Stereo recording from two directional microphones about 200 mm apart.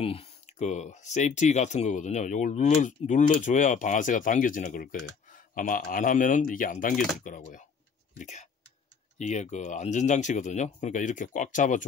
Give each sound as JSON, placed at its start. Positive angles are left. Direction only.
{"t": 0.0, "sound": "speech", "side_deg": 30}